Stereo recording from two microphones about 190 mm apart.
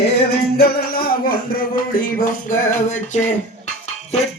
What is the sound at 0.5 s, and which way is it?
Music, 55° left (ahead or behind).